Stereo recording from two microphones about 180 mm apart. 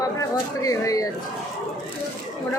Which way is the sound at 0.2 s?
20° left (ahead or behind).